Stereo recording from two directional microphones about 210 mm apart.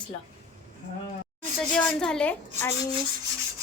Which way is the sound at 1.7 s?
5° left (ahead or behind).